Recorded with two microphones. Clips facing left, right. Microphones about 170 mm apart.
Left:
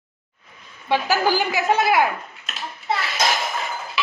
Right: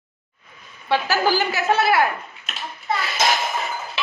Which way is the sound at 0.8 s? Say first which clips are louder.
Even; 15° left (ahead or behind).